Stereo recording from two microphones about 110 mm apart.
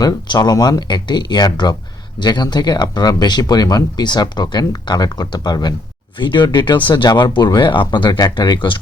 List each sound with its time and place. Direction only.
0.0 s speech: 40° left (ahead or behind)